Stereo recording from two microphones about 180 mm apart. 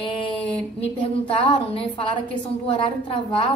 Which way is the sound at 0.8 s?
30° left (ahead or behind).